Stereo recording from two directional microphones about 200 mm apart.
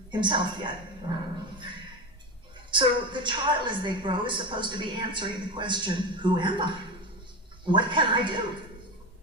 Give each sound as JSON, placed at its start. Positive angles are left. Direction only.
{"t": 0.1, "sound": "a woman's voice", "side_deg": -25}
{"t": 2.6, "sound": "a woman's voice", "side_deg": -25}